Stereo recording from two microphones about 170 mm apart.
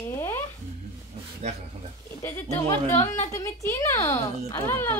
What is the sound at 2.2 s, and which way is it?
Speech, 15° left (ahead or behind).